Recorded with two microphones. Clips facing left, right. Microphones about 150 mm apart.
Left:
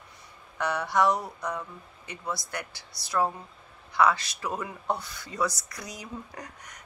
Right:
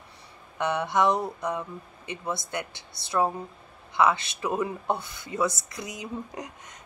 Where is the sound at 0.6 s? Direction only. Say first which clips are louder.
Right 1 dB; 20° right (ahead or behind).